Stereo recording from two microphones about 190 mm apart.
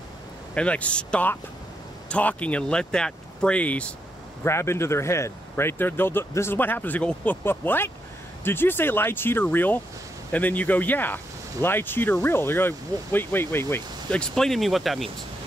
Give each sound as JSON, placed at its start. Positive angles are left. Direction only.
{"t": 0.6, "sound": "speech", "side_deg": 5}